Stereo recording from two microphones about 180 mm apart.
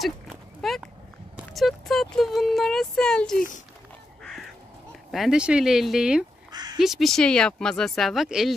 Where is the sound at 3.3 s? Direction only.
50° left (ahead or behind).